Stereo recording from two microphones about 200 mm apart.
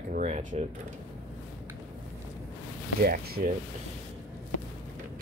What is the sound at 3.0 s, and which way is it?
Speech, 50° right (ahead or behind).